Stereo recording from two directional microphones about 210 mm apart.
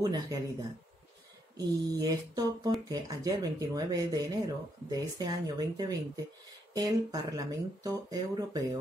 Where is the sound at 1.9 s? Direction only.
20° right (ahead or behind).